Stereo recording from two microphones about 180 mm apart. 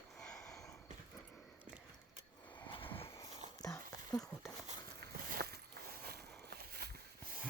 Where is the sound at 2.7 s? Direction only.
30° left (ahead or behind).